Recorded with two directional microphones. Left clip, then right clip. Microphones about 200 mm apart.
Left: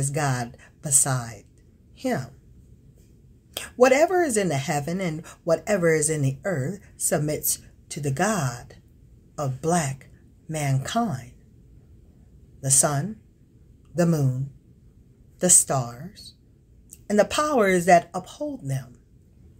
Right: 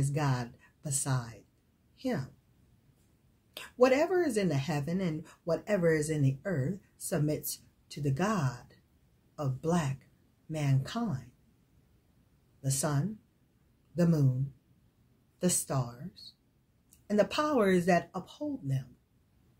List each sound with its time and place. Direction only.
0.0 s a woman's voice: centre (ahead or behind)
3.5 s speech: centre (ahead or behind)
12.6 s speech: centre (ahead or behind)
15.3 s speech: centre (ahead or behind)
17.1 s speech: centre (ahead or behind)